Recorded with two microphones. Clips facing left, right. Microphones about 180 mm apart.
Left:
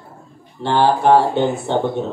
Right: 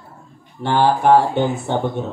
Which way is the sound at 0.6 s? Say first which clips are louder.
Even; 25° left (ahead or behind).